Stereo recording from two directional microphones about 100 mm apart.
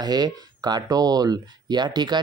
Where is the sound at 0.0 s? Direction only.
45° right (ahead or behind).